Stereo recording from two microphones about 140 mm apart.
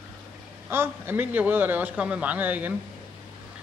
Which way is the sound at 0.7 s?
15° right (ahead or behind).